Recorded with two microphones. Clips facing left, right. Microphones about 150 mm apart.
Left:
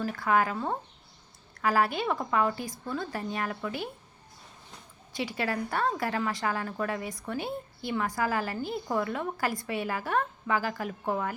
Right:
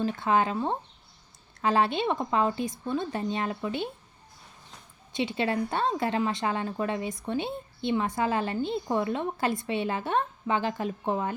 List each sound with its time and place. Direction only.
0.0 s a woman's voice: 25° right (ahead or behind)
5.1 s a woman's voice: 25° right (ahead or behind)